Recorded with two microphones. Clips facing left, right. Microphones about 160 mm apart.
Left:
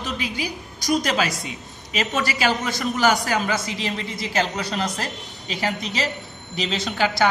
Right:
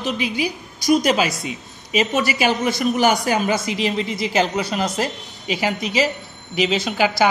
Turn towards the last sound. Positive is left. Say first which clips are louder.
# right 3 dB
turn(degrees=-5)  # may be behind; listen again after turning